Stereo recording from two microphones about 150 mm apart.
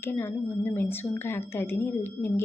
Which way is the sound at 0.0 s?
15° left (ahead or behind).